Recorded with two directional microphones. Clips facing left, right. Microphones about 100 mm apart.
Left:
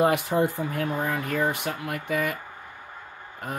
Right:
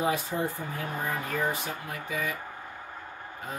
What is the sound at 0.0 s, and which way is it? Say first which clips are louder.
Speech: left 7 dB; 70° left (ahead or behind).